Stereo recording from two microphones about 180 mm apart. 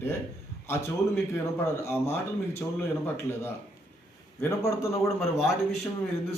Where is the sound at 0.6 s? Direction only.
15° left (ahead or behind).